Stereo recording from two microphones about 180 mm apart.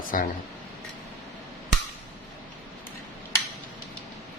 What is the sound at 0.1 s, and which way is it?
Speech, 50° left (ahead or behind).